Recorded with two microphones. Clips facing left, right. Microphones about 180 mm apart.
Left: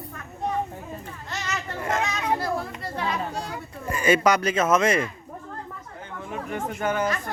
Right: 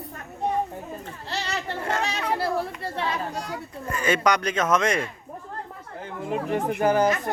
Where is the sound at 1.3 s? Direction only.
35° right (ahead or behind).